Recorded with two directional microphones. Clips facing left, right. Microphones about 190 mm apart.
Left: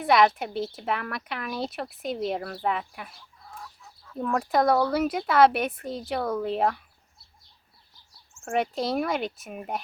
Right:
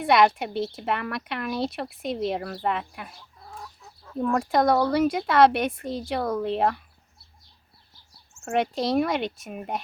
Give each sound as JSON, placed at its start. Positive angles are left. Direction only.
{"t": 0.0, "sound": "speech", "side_deg": 0}
{"t": 4.2, "sound": "speech", "side_deg": 0}
{"t": 8.4, "sound": "speech", "side_deg": 5}